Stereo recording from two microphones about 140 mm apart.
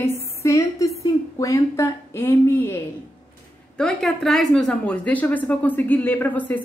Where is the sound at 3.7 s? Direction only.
5° left (ahead or behind).